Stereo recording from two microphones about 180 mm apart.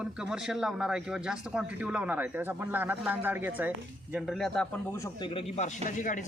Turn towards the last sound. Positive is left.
turn(degrees=45)  # may be behind; listen again after turning